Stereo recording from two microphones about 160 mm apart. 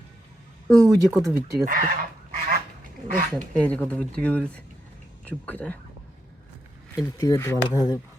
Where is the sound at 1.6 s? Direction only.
60° right (ahead or behind).